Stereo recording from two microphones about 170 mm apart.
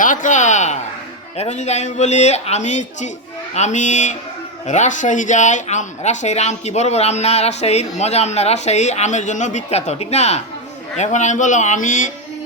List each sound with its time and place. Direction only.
0.0 s a man's voice: 50° left (ahead or behind)